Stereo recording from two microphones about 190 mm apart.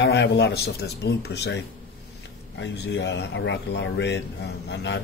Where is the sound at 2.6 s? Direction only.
65° left (ahead or behind).